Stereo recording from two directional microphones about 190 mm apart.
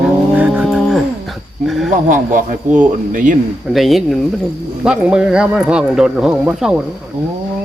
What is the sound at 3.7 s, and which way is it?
Speech, centre (ahead or behind).